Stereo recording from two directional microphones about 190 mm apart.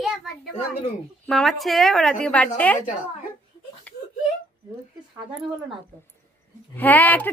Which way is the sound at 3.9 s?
10° left (ahead or behind).